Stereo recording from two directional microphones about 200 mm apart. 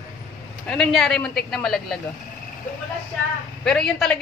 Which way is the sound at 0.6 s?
5° left (ahead or behind).